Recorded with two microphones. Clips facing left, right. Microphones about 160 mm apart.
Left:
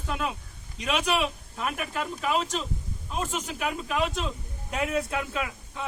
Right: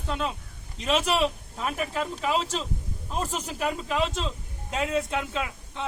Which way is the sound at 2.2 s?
30° right (ahead or behind).